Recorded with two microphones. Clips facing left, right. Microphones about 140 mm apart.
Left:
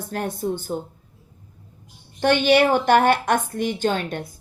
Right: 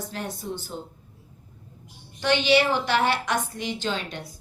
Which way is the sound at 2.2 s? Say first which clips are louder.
Left 4 dB; 50° left (ahead or behind).